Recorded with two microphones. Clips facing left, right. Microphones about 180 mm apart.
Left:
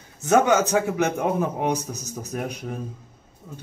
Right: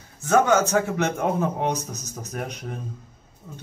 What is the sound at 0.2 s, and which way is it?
A man's voice, 15° left (ahead or behind).